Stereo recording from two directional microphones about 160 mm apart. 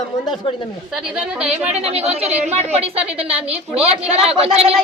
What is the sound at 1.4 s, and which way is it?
Speech, 5° right (ahead or behind).